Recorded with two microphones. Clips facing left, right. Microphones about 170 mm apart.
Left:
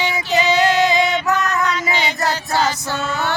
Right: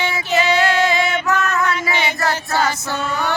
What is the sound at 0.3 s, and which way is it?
Female singing, 20° left (ahead or behind).